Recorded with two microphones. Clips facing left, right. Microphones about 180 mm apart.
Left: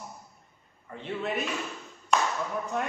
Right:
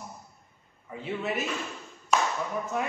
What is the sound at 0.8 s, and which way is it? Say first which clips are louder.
Speech: right 1 dB; 5° right (ahead or behind).